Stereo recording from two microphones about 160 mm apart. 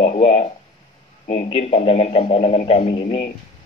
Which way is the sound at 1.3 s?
40° left (ahead or behind).